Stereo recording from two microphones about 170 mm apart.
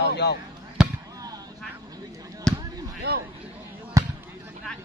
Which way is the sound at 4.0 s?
20° right (ahead or behind).